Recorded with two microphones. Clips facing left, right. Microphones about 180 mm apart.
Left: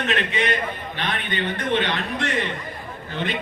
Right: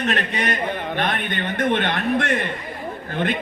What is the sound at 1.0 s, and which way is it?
A man's voice, 50° right (ahead or behind).